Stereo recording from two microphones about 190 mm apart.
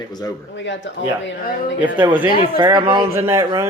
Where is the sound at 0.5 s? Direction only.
70° left (ahead or behind).